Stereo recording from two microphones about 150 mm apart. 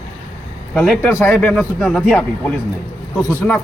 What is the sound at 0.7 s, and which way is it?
Speech, 5° left (ahead or behind).